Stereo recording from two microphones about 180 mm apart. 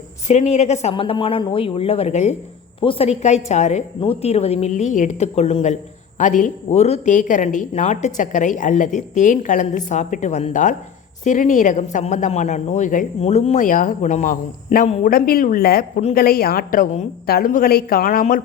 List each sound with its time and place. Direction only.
0.3 s a woman's voice: 40° left (ahead or behind)